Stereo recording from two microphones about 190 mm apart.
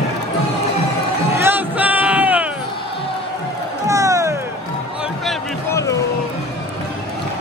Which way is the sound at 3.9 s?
15° right (ahead or behind).